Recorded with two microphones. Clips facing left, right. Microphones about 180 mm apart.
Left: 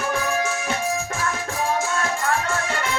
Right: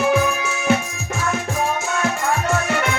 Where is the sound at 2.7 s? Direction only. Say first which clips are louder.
Right 5 dB; 65° right (ahead or behind).